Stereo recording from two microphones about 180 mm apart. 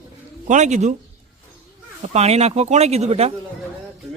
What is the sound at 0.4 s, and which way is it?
Speech, 40° right (ahead or behind).